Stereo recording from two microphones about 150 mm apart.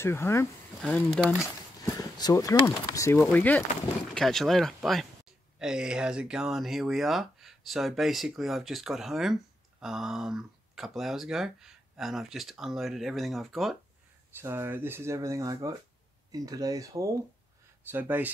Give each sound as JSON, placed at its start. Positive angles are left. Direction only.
{"t": 0.0, "sound": "speech", "side_deg": 15}
{"t": 0.8, "sound": "speech", "side_deg": 5}
{"t": 2.0, "sound": "speech", "side_deg": 25}
{"t": 14.3, "sound": "speech", "side_deg": -15}